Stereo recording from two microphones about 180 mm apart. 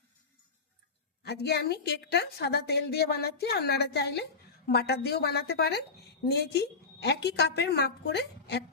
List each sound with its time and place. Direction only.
1.2 s a woman's voice: 65° left (ahead or behind)